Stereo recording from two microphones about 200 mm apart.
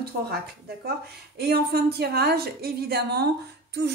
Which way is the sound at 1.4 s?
55° right (ahead or behind).